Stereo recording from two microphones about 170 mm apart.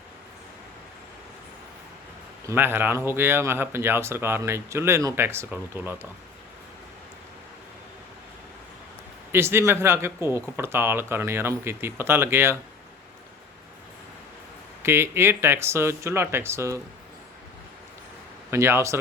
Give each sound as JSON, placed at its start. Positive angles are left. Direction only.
{"t": 2.5, "sound": "speech", "side_deg": -10}
{"t": 9.3, "sound": "speech", "side_deg": -15}
{"t": 14.8, "sound": "speech", "side_deg": -15}
{"t": 18.5, "sound": "speech", "side_deg": -15}